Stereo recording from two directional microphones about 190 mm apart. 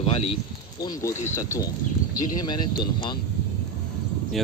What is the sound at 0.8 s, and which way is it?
Speech, 15° left (ahead or behind).